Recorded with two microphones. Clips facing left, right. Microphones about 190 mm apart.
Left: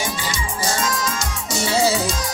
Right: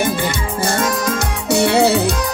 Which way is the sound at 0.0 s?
60° right (ahead or behind).